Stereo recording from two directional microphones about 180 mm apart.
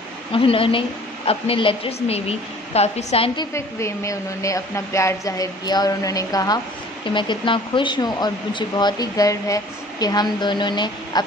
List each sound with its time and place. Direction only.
0.3 s a woman's voice: 30° left (ahead or behind)
3.3 s speech: 15° left (ahead or behind)